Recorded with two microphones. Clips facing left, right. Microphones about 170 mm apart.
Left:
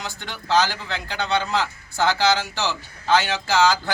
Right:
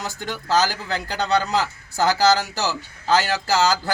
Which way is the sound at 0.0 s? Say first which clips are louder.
Right 4 dB; 40° right (ahead or behind).